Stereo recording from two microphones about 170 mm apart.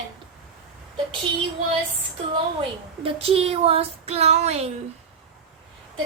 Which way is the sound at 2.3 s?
30° right (ahead or behind).